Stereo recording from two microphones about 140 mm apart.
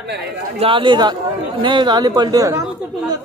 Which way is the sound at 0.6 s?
40° right (ahead or behind).